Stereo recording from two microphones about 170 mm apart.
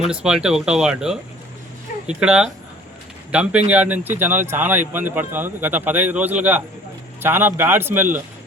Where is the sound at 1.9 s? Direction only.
50° left (ahead or behind).